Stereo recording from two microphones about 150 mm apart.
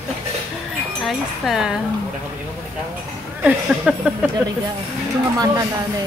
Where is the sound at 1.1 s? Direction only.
Centre (ahead or behind).